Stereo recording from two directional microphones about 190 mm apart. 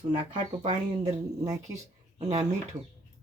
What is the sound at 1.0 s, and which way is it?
Speech, 20° right (ahead or behind).